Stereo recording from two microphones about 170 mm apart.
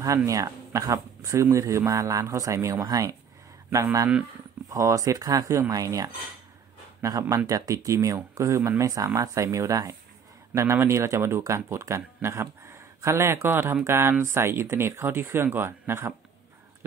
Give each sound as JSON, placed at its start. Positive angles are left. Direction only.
{"t": 0.0, "sound": "speech", "side_deg": -20}